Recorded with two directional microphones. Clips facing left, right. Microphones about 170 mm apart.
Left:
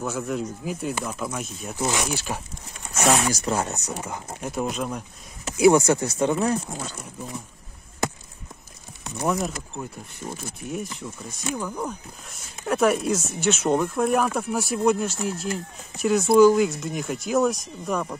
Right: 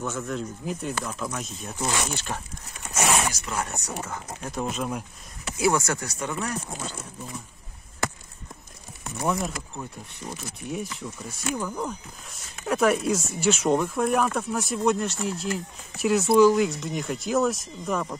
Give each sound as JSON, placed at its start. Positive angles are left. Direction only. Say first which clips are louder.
{"t": 0.0, "sound": "speech", "louder": "left 3 dB", "side_deg": 10}
{"t": 3.3, "sound": "speech", "louder": "left 6 dB", "side_deg": 35}
{"t": 3.6, "sound": "speech", "louder": "left 2 dB", "side_deg": 20}
{"t": 4.5, "sound": "speech", "louder": "left 2 dB", "side_deg": 0}
{"t": 5.6, "sound": "speech", "louder": "left 7 dB", "side_deg": 20}
{"t": 9.2, "sound": "speech", "louder": "left 2 dB", "side_deg": 0}